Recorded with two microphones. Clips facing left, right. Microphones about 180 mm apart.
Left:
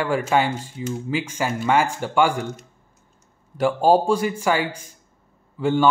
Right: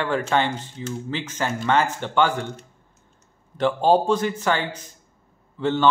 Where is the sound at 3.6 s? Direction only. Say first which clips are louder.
Left 1 dB; 10° left (ahead or behind).